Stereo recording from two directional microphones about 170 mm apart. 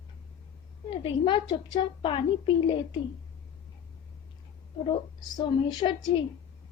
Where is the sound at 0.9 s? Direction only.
30° left (ahead or behind).